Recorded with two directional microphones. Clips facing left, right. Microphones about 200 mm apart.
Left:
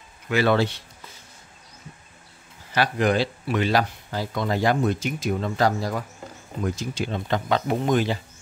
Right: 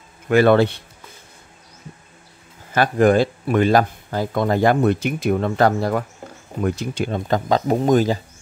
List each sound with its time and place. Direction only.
0.3 s a man's voice: 55° right (ahead or behind)
2.7 s speech: 50° right (ahead or behind)